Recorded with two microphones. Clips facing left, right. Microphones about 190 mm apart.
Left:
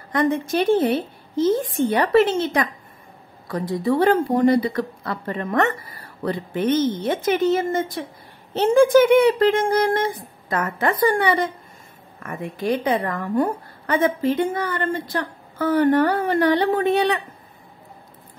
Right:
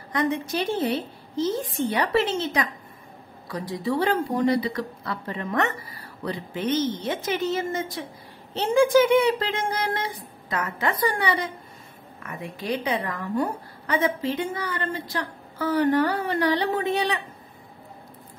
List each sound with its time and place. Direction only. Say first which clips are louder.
0.1 s a woman's voice: left 5 dB; 50° left (ahead or behind)